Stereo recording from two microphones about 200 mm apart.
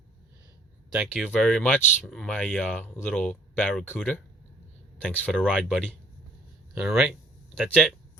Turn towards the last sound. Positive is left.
turn(degrees=0)  # may be behind; listen again after turning